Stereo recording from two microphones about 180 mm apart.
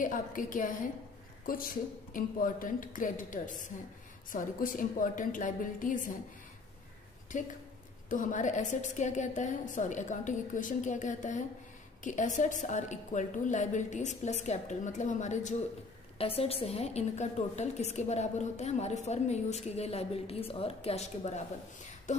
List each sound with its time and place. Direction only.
0.0 s a woman's voice: 50° left (ahead or behind)
7.3 s a woman's voice: 45° left (ahead or behind)